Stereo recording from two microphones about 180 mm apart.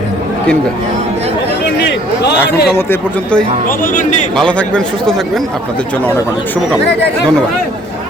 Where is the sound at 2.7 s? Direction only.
10° left (ahead or behind).